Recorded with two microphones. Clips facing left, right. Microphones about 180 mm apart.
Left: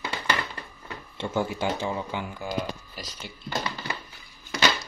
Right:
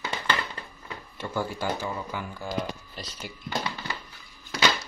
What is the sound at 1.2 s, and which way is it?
Speech, 20° left (ahead or behind).